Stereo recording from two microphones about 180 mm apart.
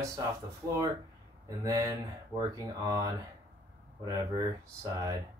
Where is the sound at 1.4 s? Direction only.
20° right (ahead or behind).